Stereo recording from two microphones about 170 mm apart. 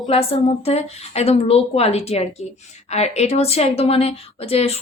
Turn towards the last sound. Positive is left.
turn(degrees=35)  # may be behind; listen again after turning